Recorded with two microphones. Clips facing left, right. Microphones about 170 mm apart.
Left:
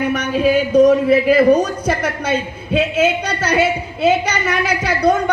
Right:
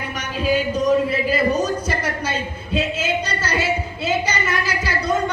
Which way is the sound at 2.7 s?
60° left (ahead or behind).